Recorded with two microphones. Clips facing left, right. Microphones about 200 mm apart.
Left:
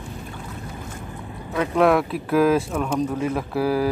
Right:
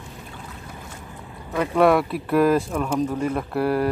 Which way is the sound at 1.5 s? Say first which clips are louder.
Even; centre (ahead or behind).